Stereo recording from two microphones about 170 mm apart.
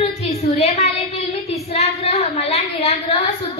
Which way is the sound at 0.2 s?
40° left (ahead or behind).